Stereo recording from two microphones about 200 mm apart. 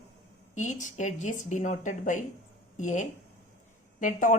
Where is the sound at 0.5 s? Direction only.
35° left (ahead or behind).